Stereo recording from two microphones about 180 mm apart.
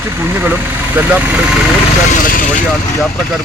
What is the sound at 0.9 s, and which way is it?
Speech, 10° right (ahead or behind).